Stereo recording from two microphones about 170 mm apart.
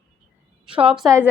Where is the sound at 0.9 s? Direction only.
Centre (ahead or behind).